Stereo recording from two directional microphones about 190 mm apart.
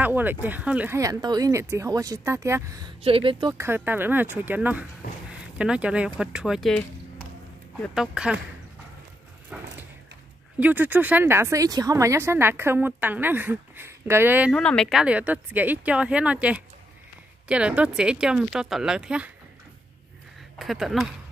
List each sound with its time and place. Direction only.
0.0 s speech: 10° right (ahead or behind)
3.0 s speech: 30° right (ahead or behind)
3.5 s speech: 10° right (ahead or behind)
9.5 s a sound: 5° right (ahead or behind)
10.6 s speech: 10° right (ahead or behind)
14.5 s speech: 5° left (ahead or behind)
20.5 s speech: centre (ahead or behind)